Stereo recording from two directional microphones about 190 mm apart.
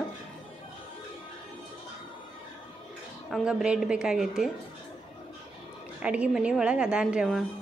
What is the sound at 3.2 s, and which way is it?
A woman's voice, centre (ahead or behind).